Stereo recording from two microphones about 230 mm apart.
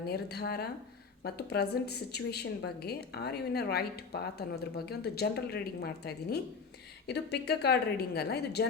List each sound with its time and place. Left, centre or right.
0.1 s a woman's voice: left